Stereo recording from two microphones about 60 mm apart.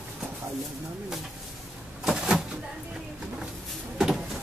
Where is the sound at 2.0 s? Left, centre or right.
Centre.